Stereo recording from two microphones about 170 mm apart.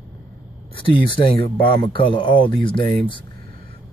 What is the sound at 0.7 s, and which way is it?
A man's voice, 30° left (ahead or behind).